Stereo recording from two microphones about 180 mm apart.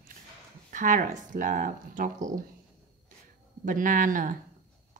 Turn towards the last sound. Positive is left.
turn(degrees=-45)  # may be behind; listen again after turning